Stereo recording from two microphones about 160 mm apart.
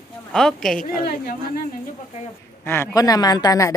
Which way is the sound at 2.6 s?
20° left (ahead or behind).